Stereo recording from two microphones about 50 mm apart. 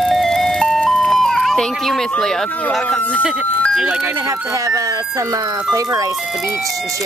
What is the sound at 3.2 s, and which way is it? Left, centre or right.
Speech, right.